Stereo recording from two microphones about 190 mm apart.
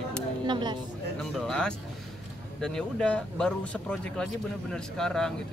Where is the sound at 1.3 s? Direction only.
5° left (ahead or behind).